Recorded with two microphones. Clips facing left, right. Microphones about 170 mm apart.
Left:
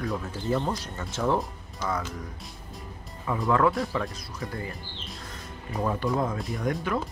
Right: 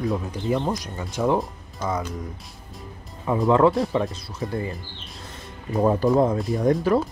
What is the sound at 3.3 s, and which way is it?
Speech, 25° right (ahead or behind).